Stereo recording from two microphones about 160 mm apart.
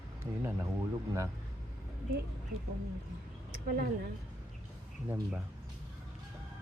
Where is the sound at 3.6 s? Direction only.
70° right (ahead or behind).